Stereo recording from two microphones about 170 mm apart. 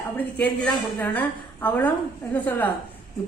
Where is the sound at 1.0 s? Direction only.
10° left (ahead or behind).